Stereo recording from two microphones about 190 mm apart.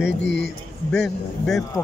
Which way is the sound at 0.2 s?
70° left (ahead or behind).